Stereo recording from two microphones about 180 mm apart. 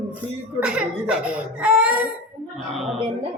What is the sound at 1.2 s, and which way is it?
Speech, 5° right (ahead or behind).